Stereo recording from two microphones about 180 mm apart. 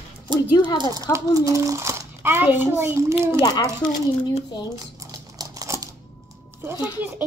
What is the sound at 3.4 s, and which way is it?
Speech, 20° left (ahead or behind).